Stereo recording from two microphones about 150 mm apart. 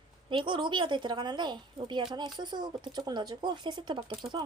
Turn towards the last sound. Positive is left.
turn(degrees=-20)  # may be behind; listen again after turning